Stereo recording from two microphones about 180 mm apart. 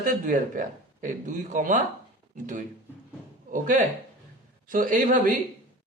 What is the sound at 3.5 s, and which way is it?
A man's voice, 45° right (ahead or behind).